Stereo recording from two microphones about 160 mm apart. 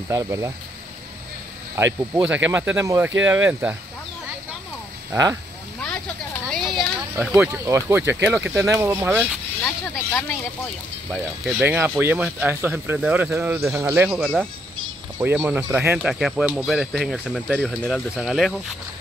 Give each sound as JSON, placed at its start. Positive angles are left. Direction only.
{"t": 0.1, "sound": "speech", "side_deg": -20}
{"t": 1.8, "sound": "speech", "side_deg": -15}
{"t": 5.1, "sound": "speech", "side_deg": -15}
{"t": 6.5, "sound": "a sound", "side_deg": 0}
{"t": 7.6, "sound": "speech", "side_deg": -15}
{"t": 11.1, "sound": "speech", "side_deg": 0}
{"t": 11.6, "sound": "speech", "side_deg": -10}
{"t": 14.0, "sound": "speech", "side_deg": 0}
{"t": 16.0, "sound": "speech", "side_deg": 0}